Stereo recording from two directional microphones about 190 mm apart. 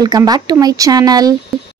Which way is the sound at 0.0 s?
20° right (ahead or behind).